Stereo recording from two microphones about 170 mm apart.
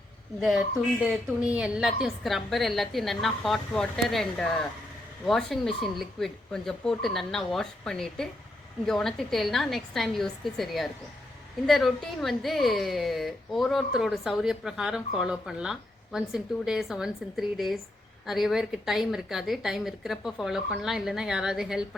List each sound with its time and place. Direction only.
1.5 s a woman's voice: 5° right (ahead or behind)